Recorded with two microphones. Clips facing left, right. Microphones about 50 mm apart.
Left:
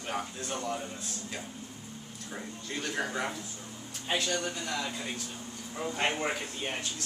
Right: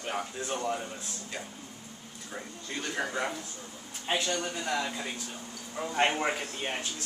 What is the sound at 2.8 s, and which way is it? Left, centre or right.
Speech, centre.